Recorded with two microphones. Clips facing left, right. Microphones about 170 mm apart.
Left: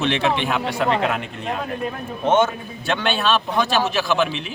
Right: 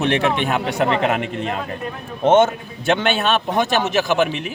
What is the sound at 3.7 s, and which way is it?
Speech, 20° right (ahead or behind).